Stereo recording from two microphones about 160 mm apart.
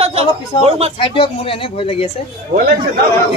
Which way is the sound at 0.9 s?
35° left (ahead or behind).